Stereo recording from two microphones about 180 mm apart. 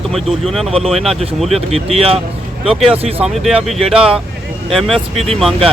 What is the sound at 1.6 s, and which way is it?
Speech, 35° right (ahead or behind).